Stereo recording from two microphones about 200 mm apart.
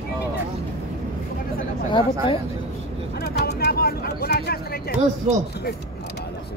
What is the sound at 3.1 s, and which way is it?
Speech, 55° left (ahead or behind).